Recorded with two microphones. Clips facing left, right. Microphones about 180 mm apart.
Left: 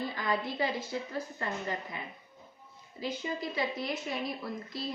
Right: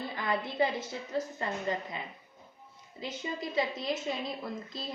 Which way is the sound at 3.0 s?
20° right (ahead or behind).